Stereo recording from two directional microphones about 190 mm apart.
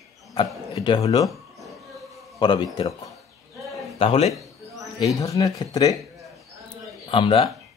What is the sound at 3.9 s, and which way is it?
Speech, 30° left (ahead or behind).